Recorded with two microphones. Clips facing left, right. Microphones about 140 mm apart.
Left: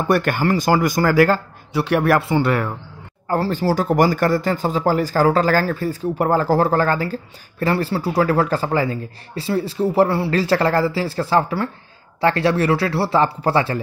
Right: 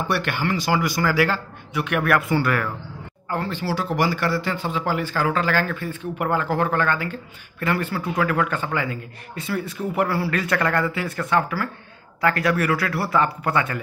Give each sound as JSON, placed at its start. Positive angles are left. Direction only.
{"t": 0.1, "sound": "a man's voice", "side_deg": 45}
{"t": 3.3, "sound": "a man's voice", "side_deg": 40}